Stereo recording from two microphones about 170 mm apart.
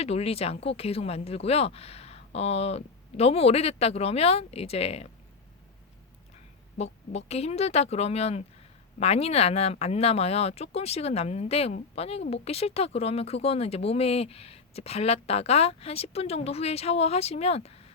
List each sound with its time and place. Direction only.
0.0 s speech: 35° left (ahead or behind)
6.7 s speech: 40° left (ahead or behind)